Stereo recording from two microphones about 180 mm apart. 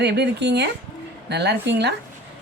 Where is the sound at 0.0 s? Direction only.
70° right (ahead or behind).